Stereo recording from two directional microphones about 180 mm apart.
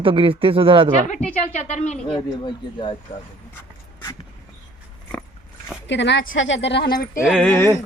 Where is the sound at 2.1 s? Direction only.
25° left (ahead or behind).